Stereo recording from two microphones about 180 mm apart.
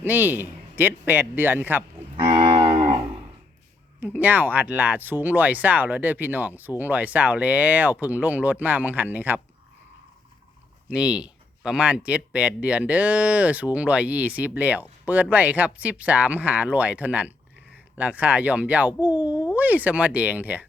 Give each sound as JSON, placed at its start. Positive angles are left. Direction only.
{"t": 0.0, "sound": "speech", "side_deg": -10}
{"t": 2.1, "sound": "moo", "side_deg": -30}
{"t": 2.7, "sound": "cattle", "side_deg": -20}
{"t": 4.0, "sound": "speech", "side_deg": -10}
{"t": 10.8, "sound": "speech", "side_deg": -5}